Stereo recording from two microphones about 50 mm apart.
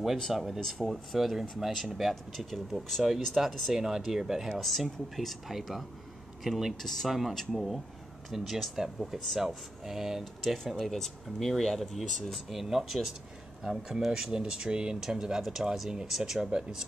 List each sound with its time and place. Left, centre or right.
0.3 s speech: centre
0.6 s speech: centre
0.8 s speech: centre
3.7 s speech: centre
4.6 s speech: centre
6.8 s speech: centre